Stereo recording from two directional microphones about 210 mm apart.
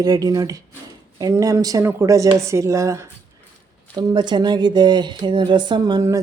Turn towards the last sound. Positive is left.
turn(degrees=-15)  # may be behind; listen again after turning